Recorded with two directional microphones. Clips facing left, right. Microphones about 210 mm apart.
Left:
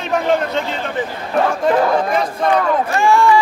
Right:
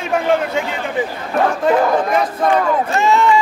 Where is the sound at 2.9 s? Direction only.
20° right (ahead or behind).